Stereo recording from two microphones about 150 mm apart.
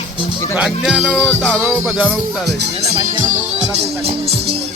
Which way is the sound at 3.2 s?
55° right (ahead or behind).